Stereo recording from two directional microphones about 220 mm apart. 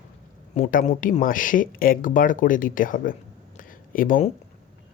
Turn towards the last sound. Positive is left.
turn(degrees=40)  # may be behind; listen again after turning